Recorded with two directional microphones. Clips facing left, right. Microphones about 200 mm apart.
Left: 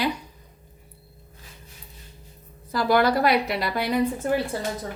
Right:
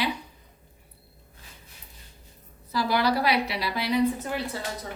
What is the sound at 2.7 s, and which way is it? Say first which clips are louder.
A woman's voice: left 4 dB; 50° left (ahead or behind).